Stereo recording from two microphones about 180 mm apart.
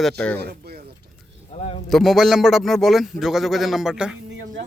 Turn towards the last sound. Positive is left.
turn(degrees=-5)  # may be behind; listen again after turning